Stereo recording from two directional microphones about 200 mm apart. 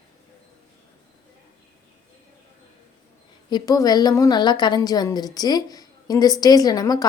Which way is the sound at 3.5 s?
20° left (ahead or behind).